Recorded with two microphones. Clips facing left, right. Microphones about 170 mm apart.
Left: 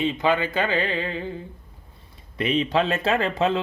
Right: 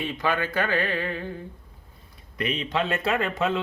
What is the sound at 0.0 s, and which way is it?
Speech, 20° left (ahead or behind).